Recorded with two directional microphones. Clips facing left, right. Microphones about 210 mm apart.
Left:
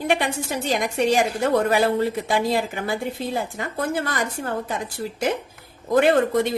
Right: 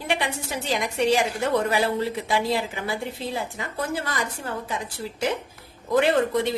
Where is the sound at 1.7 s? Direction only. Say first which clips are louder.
Left 4 dB; 50° left (ahead or behind).